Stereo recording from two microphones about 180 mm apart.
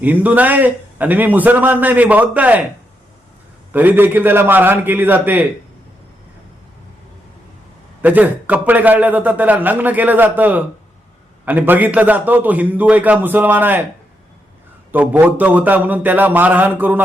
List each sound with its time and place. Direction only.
0.0 s a man's voice: 10° right (ahead or behind)
3.7 s a man's voice: 10° right (ahead or behind)
8.0 s a man's voice: 10° right (ahead or behind)
14.9 s a man's voice: 10° right (ahead or behind)